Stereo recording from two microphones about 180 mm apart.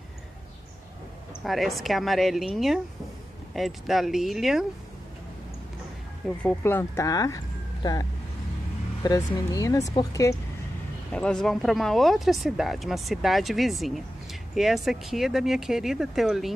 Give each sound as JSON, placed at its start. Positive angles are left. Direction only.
{"t": 1.4, "sound": "speech", "side_deg": 0}
{"t": 6.2, "sound": "speech", "side_deg": 10}
{"t": 11.1, "sound": "speech", "side_deg": 5}